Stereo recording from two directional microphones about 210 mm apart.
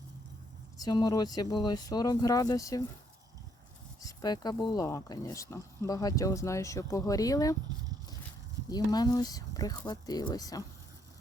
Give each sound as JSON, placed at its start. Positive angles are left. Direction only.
{"t": 0.8, "sound": "speech", "side_deg": 20}
{"t": 4.0, "sound": "speech", "side_deg": 20}
{"t": 8.7, "sound": "speech", "side_deg": 20}